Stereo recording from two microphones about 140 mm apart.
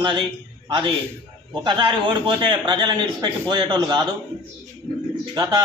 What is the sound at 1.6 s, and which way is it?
A man's voice, 35° right (ahead or behind).